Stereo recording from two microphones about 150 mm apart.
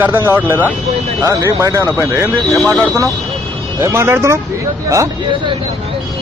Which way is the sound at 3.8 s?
20° right (ahead or behind).